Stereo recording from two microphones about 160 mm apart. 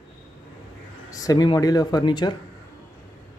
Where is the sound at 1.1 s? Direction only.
25° left (ahead or behind).